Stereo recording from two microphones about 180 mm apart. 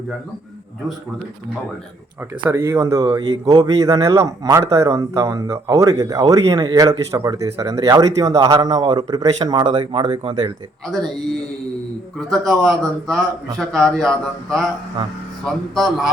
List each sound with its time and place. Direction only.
2.4 s speech: 15° right (ahead or behind)
12.3 s a man's voice: centre (ahead or behind)
15.7 s a man's voice: centre (ahead or behind)